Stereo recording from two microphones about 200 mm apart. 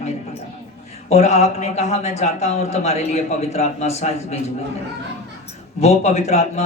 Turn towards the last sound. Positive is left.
turn(degrees=35)  # may be behind; listen again after turning